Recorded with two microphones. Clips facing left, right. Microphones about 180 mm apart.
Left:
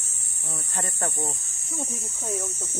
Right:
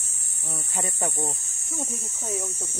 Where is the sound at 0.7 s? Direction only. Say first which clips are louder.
Right 1 dB; 10° right (ahead or behind).